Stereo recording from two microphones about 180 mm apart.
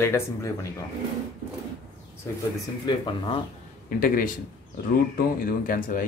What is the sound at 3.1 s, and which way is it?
Speech, 25° left (ahead or behind).